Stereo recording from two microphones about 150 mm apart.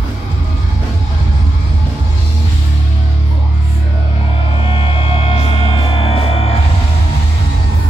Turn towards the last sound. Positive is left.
turn(degrees=40)  # may be behind; listen again after turning